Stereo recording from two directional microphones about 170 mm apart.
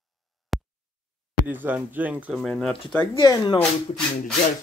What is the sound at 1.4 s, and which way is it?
Speech, 10° right (ahead or behind).